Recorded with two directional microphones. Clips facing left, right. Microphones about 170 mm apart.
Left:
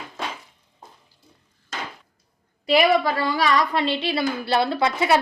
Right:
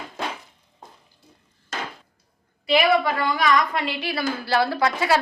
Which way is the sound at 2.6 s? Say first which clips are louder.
Left 1 dB; 35° left (ahead or behind).